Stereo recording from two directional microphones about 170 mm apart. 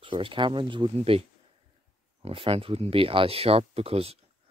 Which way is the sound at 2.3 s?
35° right (ahead or behind).